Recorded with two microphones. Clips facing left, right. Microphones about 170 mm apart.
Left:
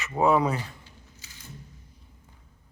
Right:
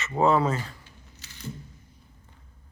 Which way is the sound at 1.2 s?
70° right (ahead or behind).